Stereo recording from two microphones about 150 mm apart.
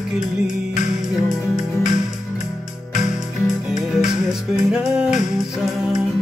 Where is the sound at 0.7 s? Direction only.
55° left (ahead or behind).